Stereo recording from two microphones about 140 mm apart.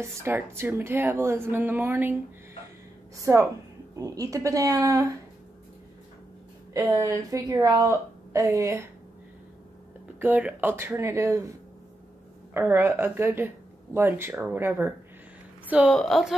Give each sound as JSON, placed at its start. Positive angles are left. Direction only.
{"t": 0.0, "sound": "speech", "side_deg": -20}
{"t": 3.3, "sound": "a woman's voice", "side_deg": -20}
{"t": 6.7, "sound": "a woman's voice", "side_deg": -20}
{"t": 10.1, "sound": "speech", "side_deg": -15}
{"t": 12.5, "sound": "a woman's voice", "side_deg": -15}